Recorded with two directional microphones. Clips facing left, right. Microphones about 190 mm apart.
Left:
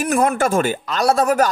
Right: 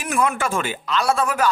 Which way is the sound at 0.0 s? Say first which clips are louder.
Left 5 dB; 40° left (ahead or behind).